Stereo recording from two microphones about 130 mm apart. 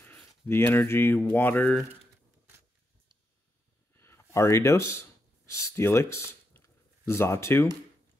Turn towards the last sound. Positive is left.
turn(degrees=20)  # may be behind; listen again after turning